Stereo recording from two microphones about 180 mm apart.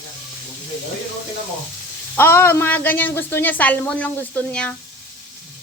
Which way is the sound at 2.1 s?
10° left (ahead or behind).